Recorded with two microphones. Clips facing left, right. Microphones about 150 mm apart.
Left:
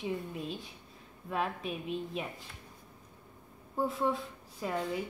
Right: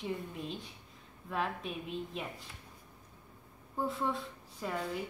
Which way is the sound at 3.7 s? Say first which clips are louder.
Left 3 dB; centre (ahead or behind).